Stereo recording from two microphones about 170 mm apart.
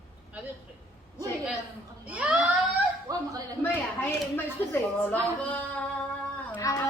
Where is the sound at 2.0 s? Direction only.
10° right (ahead or behind).